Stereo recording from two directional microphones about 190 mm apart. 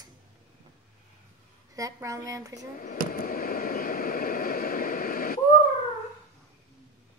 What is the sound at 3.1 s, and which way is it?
Vehicle, 50° left (ahead or behind).